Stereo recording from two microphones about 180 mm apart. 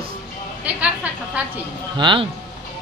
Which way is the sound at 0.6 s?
10° right (ahead or behind).